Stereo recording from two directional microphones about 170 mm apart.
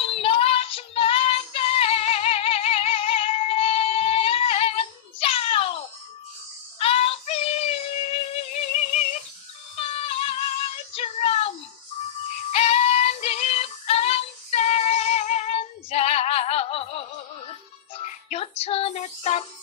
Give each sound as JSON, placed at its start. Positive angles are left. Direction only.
{"t": 0.0, "sound": "music", "side_deg": 35}
{"t": 6.8, "sound": "music", "side_deg": 35}
{"t": 9.8, "sound": "child singing", "side_deg": 35}
{"t": 12.4, "sound": "music", "side_deg": 40}